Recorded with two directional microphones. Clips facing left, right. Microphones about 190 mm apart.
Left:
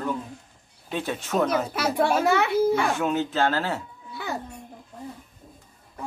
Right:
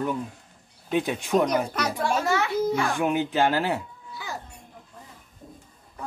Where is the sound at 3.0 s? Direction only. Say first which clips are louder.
Right 1 dB; 15° right (ahead or behind).